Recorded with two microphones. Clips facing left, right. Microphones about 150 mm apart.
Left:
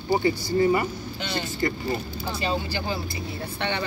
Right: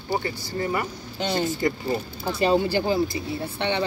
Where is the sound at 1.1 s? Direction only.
40° right (ahead or behind).